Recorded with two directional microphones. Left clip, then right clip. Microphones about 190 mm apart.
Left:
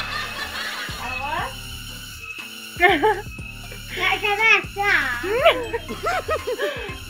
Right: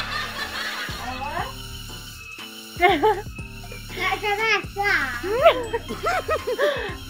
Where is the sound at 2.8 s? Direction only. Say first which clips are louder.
Left 1 dB; 5° right (ahead or behind).